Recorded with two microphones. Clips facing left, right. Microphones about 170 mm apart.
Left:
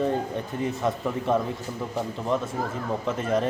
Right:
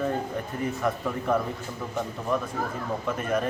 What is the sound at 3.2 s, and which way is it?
Speech, 25° left (ahead or behind).